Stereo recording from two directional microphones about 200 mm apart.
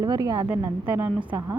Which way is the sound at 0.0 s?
20° right (ahead or behind).